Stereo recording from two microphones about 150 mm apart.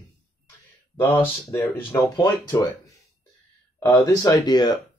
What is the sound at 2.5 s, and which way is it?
Speech, 25° left (ahead or behind).